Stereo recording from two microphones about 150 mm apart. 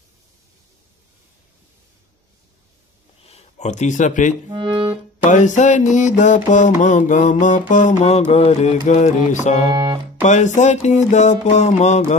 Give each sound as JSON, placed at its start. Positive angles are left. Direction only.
{"t": 3.3, "sound": "speech", "side_deg": 45}
{"t": 4.5, "sound": "music", "side_deg": -30}
{"t": 5.2, "sound": "a sound", "side_deg": 55}
{"t": 6.8, "sound": "mantra", "side_deg": 55}